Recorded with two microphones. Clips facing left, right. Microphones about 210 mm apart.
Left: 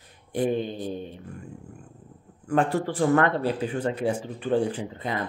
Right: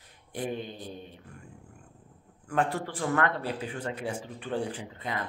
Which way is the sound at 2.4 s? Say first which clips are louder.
Left 6 dB; 30° left (ahead or behind).